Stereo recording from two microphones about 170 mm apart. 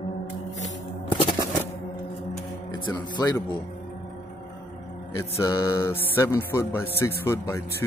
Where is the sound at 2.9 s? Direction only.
20° left (ahead or behind).